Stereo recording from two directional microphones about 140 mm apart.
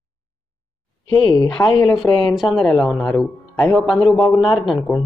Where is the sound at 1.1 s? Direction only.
30° left (ahead or behind).